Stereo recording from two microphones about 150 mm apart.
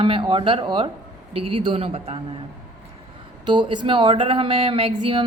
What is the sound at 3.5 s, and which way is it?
Speech, 30° right (ahead or behind).